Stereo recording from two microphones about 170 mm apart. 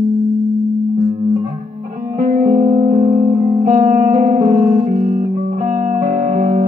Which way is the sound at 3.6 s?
55° right (ahead or behind).